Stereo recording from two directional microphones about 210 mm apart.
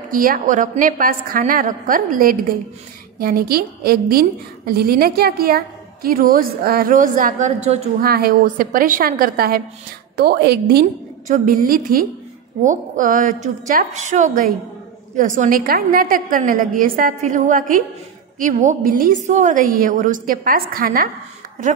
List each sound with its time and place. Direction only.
0.1 s a woman's voice: 40° right (ahead or behind)
8.0 s a woman's voice: 45° right (ahead or behind)